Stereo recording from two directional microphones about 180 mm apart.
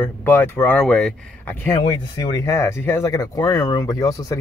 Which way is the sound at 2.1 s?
20° left (ahead or behind).